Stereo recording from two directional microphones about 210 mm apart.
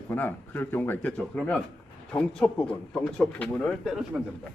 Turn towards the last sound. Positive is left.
turn(degrees=0)  # may be behind; listen again after turning